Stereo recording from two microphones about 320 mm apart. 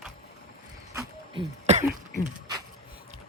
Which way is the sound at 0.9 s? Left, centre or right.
Centre.